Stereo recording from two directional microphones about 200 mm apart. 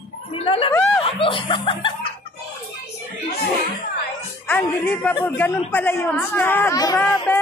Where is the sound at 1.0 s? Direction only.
25° left (ahead or behind).